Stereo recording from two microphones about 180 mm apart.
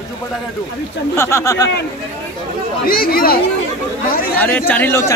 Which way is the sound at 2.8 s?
55° left (ahead or behind).